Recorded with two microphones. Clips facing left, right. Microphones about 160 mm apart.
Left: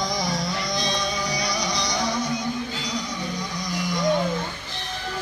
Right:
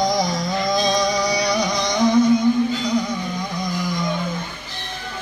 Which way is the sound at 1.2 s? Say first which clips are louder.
Right 7 dB; 65° right (ahead or behind).